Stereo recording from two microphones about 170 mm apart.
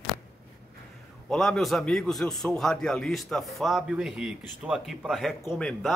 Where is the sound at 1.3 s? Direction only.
5° left (ahead or behind).